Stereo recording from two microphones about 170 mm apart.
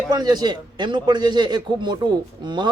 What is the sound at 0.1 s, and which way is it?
Speech, 25° right (ahead or behind).